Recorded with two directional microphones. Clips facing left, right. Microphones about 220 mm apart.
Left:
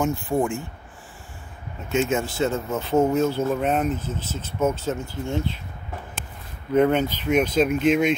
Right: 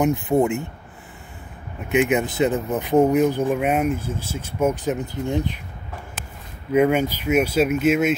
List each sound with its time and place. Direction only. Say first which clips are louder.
0.0 s speech: right 4 dB; 20° right (ahead or behind)
1.9 s speech: right 3 dB; 15° right (ahead or behind)
6.7 s speech: right 1 dB; 10° right (ahead or behind)